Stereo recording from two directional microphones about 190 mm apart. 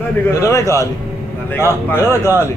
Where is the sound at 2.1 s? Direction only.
10° right (ahead or behind).